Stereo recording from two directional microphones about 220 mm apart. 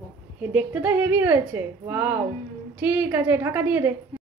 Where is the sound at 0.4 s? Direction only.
5° right (ahead or behind).